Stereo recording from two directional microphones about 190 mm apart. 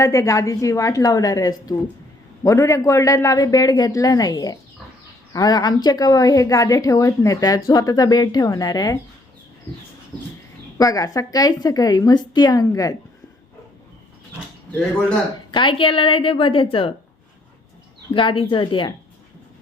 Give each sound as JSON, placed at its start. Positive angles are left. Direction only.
{"t": 0.0, "sound": "a woman's voice", "side_deg": 15}
{"t": 10.8, "sound": "a woman's voice", "side_deg": 20}
{"t": 15.5, "sound": "a woman's voice", "side_deg": 25}
{"t": 18.1, "sound": "a woman's voice", "side_deg": 25}